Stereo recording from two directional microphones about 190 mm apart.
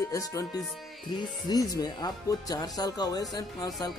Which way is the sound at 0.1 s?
15° left (ahead or behind).